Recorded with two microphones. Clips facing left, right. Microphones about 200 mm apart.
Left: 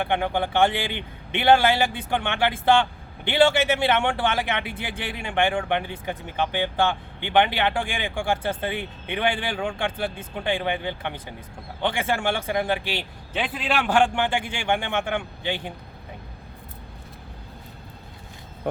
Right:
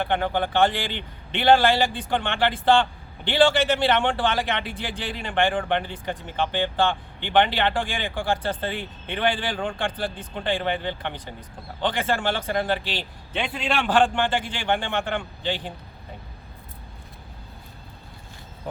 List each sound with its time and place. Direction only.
0.0 s a man's voice: 15° left (ahead or behind)
3.9 s a man's voice: 10° left (ahead or behind)
4.7 s speech: 60° left (ahead or behind)
5.1 s a man's voice: 10° left (ahead or behind)